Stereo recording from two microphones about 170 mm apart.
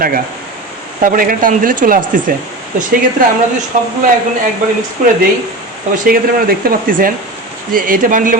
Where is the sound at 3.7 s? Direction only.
45° right (ahead or behind).